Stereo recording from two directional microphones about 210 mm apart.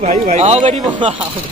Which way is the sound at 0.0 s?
35° right (ahead or behind).